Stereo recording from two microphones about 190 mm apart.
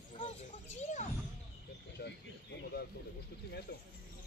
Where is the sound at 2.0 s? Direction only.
60° left (ahead or behind).